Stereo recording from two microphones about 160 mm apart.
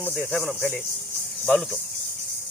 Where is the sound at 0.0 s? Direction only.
5° left (ahead or behind).